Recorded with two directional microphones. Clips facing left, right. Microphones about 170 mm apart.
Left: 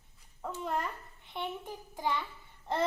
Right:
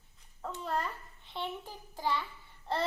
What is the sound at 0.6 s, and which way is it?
A child's voice, 20° left (ahead or behind).